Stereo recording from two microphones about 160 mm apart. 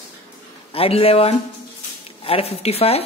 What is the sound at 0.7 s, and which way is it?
Speech, 35° left (ahead or behind).